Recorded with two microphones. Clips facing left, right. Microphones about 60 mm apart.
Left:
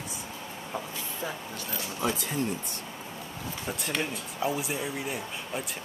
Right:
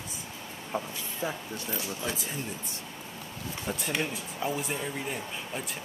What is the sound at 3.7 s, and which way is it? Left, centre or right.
Speech, centre.